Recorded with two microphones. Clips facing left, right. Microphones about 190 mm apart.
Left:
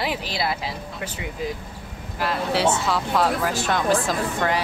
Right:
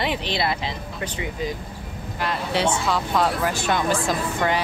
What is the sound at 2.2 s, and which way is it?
Speech, 5° left (ahead or behind).